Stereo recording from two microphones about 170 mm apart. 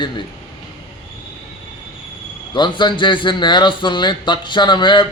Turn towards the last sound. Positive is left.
turn(degrees=25)  # may be behind; listen again after turning